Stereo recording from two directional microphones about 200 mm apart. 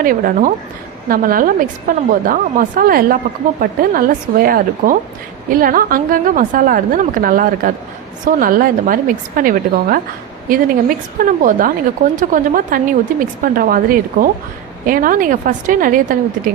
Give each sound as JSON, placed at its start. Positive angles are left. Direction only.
{"t": 0.0, "sound": "a woman's voice", "side_deg": -45}